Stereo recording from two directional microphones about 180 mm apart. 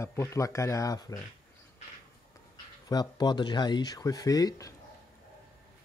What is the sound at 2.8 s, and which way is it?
Speech, 20° left (ahead or behind).